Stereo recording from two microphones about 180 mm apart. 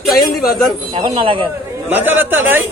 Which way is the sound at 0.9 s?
30° right (ahead or behind).